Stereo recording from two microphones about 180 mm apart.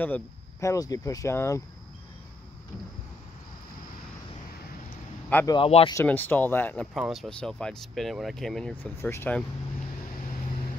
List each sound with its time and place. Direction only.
0.0 s speech: 15° left (ahead or behind)
5.5 s speech: 30° left (ahead or behind)
5.9 s speech: 10° left (ahead or behind)
6.9 s speech: centre (ahead or behind)